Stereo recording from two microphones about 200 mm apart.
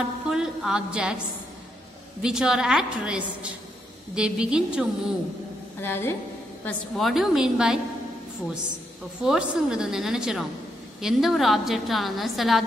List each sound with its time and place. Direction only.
0.3 s a woman's voice: 5° right (ahead or behind)
2.2 s a woman's voice: 5° right (ahead or behind)
5.8 s a woman's voice: 10° left (ahead or behind)
9.2 s a woman's voice: 5° right (ahead or behind)